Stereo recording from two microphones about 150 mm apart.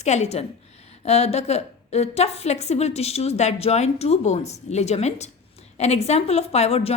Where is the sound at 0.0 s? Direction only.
50° left (ahead or behind).